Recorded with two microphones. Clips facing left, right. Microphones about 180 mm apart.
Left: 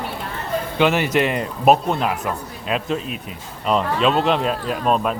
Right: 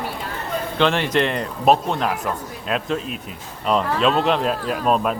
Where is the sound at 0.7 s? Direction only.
10° left (ahead or behind).